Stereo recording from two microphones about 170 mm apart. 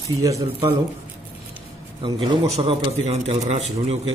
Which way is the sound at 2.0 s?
30° right (ahead or behind).